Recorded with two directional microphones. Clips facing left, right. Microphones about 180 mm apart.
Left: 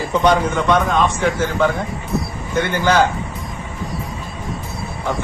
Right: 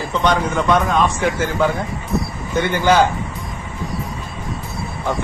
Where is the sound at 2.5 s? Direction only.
15° right (ahead or behind).